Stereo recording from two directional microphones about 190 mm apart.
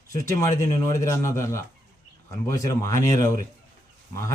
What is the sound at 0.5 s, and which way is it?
Speech, 15° left (ahead or behind).